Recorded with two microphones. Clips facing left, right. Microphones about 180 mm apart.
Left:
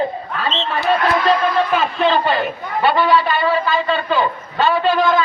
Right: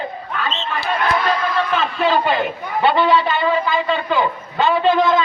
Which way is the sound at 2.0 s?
10° right (ahead or behind).